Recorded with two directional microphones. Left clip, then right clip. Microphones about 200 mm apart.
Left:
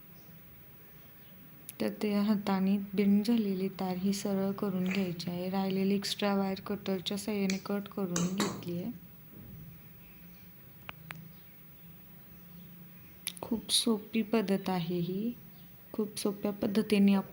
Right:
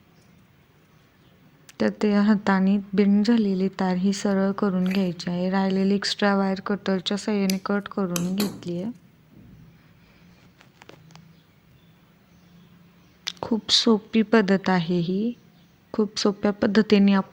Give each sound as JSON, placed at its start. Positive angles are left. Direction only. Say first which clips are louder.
{"t": 1.6, "sound": "a woman's voice", "louder": "right 10 dB", "side_deg": -20}
{"t": 13.2, "sound": "a woman's voice", "louder": "right 11 dB", "side_deg": -15}